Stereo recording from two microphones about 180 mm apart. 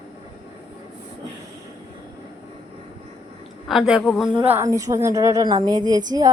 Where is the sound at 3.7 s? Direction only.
5° right (ahead or behind).